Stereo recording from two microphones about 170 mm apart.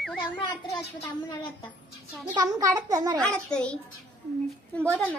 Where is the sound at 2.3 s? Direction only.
20° right (ahead or behind).